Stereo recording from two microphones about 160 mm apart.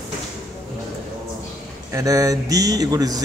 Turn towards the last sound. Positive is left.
turn(degrees=-25)  # may be behind; listen again after turning